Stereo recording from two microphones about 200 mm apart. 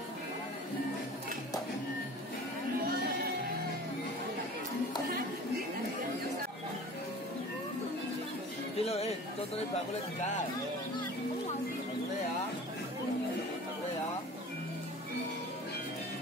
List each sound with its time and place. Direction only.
8.7 s speech: 30° left (ahead or behind)